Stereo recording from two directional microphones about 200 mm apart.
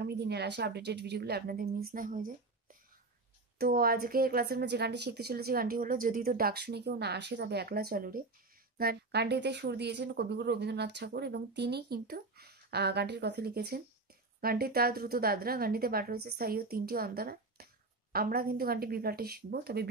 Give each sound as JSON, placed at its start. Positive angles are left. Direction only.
{"t": 0.0, "sound": "a woman's voice", "side_deg": -55}